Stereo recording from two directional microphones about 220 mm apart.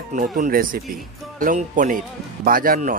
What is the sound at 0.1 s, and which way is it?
Speech, 35° right (ahead or behind).